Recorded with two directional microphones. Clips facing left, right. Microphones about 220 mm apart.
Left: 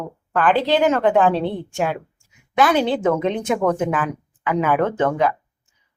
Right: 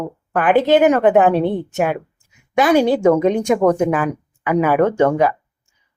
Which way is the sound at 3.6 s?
15° right (ahead or behind).